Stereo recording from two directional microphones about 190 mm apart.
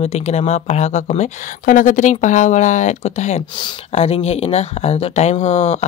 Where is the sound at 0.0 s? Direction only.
35° left (ahead or behind).